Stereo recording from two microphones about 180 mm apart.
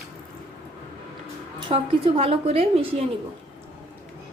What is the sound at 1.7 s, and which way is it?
A woman's voice, 30° right (ahead or behind).